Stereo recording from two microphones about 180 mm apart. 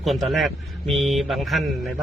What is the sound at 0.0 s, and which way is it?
Speech, centre (ahead or behind).